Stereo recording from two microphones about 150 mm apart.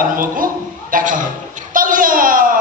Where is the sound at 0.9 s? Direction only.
65° right (ahead or behind).